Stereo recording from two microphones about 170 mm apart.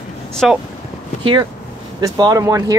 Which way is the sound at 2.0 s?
20° right (ahead or behind).